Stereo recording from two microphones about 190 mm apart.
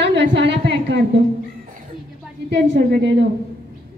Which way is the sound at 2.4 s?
65° right (ahead or behind).